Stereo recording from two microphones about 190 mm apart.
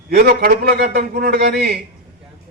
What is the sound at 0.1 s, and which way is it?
A man's voice, 55° right (ahead or behind).